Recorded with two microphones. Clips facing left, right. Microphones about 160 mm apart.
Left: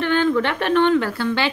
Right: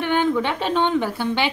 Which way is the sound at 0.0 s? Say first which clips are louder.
Left 2 dB; 15° right (ahead or behind).